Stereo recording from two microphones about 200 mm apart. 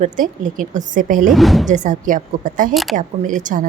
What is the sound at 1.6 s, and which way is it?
Speech, 40° right (ahead or behind).